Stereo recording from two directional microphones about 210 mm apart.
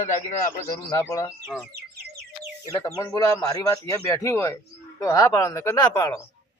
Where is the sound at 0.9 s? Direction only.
15° left (ahead or behind).